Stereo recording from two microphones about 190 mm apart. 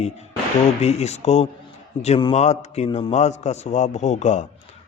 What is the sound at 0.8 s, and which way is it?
A man's voice, 35° left (ahead or behind).